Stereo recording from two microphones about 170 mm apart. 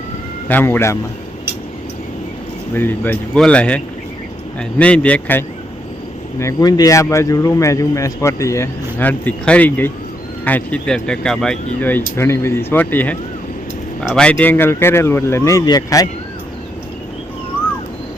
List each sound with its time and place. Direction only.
0.4 s a man's voice: 10° left (ahead or behind)
2.7 s a man's voice: 10° left (ahead or behind)
4.8 s a man's voice: 5° left (ahead or behind)
6.4 s a man's voice: 20° left (ahead or behind)